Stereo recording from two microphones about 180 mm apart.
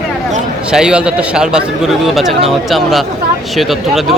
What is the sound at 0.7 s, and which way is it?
Speech, 5° right (ahead or behind).